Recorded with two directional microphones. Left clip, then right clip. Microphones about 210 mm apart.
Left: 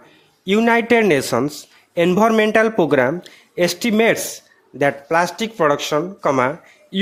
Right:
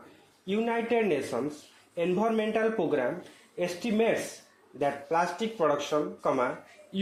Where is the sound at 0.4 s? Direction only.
50° left (ahead or behind).